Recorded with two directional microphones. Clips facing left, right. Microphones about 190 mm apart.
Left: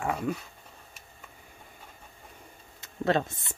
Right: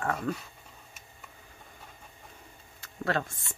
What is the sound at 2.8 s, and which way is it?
Speech, 20° left (ahead or behind).